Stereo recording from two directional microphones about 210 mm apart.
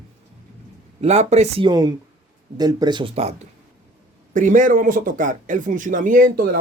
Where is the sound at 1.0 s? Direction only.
30° right (ahead or behind).